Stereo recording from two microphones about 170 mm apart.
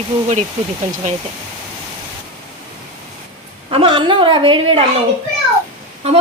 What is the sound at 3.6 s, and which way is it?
Speech, 30° right (ahead or behind).